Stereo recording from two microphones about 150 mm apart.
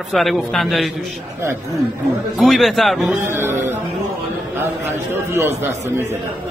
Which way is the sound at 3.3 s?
15° right (ahead or behind).